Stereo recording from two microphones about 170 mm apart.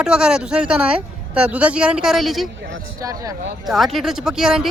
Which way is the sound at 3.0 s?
20° right (ahead or behind).